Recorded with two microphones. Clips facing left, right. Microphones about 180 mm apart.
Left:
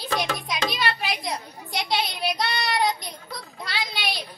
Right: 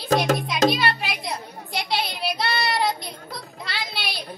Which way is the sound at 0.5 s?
55° right (ahead or behind).